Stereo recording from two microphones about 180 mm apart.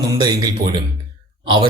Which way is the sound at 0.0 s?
25° right (ahead or behind).